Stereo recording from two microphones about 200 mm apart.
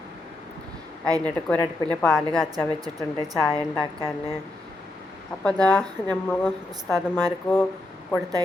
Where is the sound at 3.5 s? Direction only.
5° left (ahead or behind).